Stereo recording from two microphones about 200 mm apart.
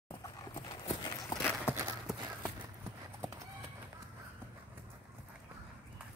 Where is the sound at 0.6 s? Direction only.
20° left (ahead or behind).